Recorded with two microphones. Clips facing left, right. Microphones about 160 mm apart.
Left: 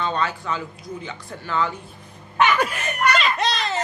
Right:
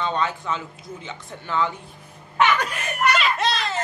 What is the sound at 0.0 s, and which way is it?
Speech, 20° right (ahead or behind).